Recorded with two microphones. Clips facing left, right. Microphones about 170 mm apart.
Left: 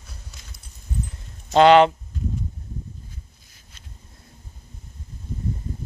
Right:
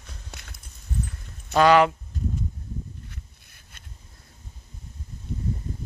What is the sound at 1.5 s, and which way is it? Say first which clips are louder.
Speech: left 4 dB; 25° left (ahead or behind).